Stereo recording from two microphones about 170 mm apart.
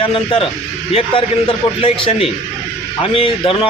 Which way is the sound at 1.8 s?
35° left (ahead or behind).